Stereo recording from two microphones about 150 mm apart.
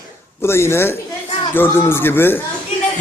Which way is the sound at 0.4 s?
15° left (ahead or behind).